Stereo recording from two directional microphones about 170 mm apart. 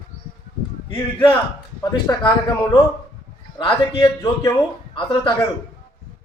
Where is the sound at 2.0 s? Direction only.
25° left (ahead or behind).